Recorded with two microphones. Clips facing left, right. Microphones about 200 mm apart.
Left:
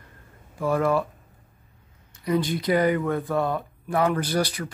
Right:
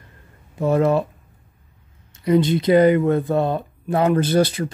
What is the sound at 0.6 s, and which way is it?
Speech, 25° right (ahead or behind).